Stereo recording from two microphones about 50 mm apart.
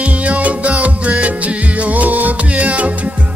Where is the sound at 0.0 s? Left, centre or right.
Right.